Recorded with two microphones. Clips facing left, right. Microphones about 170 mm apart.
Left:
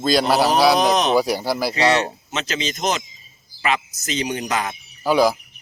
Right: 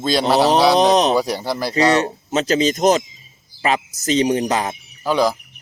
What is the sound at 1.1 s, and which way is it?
Speech, 5° left (ahead or behind).